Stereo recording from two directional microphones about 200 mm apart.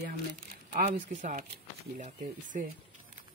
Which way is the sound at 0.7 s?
40° right (ahead or behind).